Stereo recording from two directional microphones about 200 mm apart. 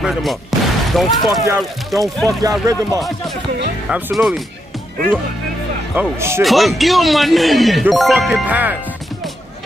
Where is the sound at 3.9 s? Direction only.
5° right (ahead or behind).